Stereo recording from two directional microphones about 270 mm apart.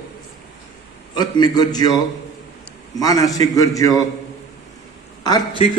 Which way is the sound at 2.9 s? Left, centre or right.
Centre.